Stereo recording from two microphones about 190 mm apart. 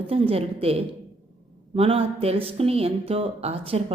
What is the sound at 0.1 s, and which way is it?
Speech, 30° right (ahead or behind).